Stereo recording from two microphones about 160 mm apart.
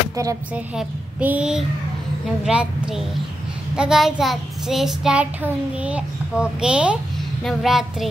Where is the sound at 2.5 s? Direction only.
5° right (ahead or behind).